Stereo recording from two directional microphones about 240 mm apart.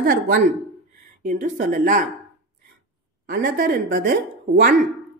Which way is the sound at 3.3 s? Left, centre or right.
Right.